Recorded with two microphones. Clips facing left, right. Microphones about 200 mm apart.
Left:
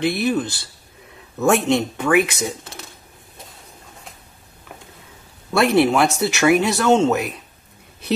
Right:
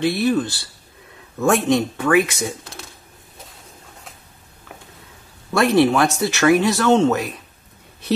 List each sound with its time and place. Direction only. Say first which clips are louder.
0.0 s speech: right 1 dB; 15° left (ahead or behind)
5.6 s speech: even; 15° left (ahead or behind)